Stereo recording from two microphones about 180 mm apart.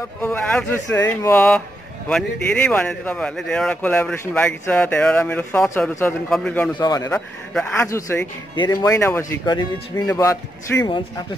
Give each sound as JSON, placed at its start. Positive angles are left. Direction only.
{"t": 0.2, "sound": "speech", "side_deg": 10}
{"t": 1.3, "sound": "a man's voice", "side_deg": 5}
{"t": 6.8, "sound": "speech", "side_deg": 20}
{"t": 7.2, "sound": "a man's voice", "side_deg": 0}
{"t": 7.7, "sound": "speech", "side_deg": 15}